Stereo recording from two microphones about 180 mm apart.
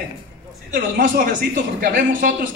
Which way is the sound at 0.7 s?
50° right (ahead or behind).